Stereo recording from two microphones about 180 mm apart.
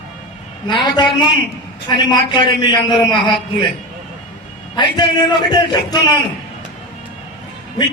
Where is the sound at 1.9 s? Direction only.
25° left (ahead or behind).